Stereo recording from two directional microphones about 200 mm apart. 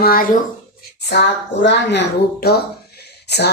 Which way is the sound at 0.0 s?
45° left (ahead or behind).